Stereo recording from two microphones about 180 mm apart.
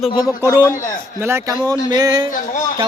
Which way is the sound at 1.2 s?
15° right (ahead or behind).